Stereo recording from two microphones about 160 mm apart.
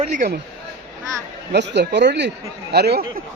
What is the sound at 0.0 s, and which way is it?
Speech, 50° right (ahead or behind).